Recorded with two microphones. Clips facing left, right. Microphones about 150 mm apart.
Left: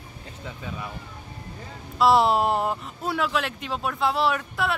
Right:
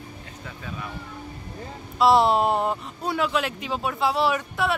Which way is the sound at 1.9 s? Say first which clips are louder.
Right 1 dB; centre (ahead or behind).